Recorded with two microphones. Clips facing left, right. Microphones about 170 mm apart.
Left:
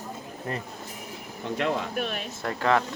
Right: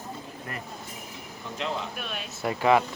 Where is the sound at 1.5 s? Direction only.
55° left (ahead or behind).